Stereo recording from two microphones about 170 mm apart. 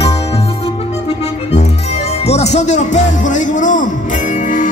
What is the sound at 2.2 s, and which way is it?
Music, 40° left (ahead or behind).